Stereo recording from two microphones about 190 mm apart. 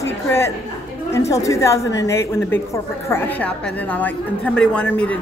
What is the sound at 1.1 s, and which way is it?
A woman's voice, 15° left (ahead or behind).